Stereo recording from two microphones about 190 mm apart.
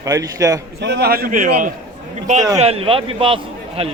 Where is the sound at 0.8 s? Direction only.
60° right (ahead or behind).